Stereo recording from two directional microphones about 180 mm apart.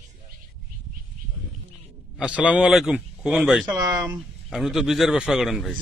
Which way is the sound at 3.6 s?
20° right (ahead or behind).